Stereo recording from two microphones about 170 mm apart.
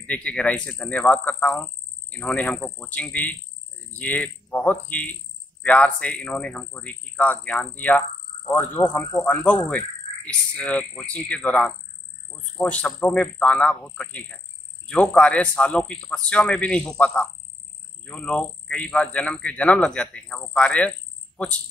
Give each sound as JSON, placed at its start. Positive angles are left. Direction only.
{"t": 0.0, "sound": "speech", "side_deg": 5}